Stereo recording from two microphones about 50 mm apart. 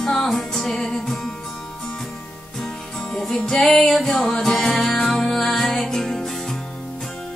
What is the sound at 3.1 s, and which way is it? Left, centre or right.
Music, centre.